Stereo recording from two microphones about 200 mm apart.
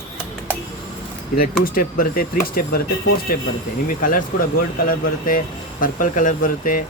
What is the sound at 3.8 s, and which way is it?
Speech, 40° left (ahead or behind).